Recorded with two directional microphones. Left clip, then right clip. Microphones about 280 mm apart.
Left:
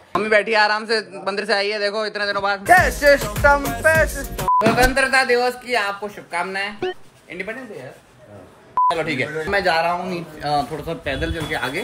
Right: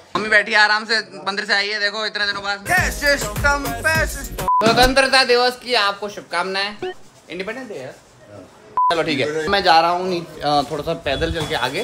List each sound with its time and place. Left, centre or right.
0.1 s a man's voice: centre
4.9 s speech: centre
8.9 s speech: centre